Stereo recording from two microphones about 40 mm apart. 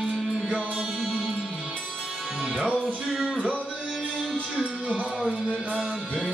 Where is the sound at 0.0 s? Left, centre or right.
Right.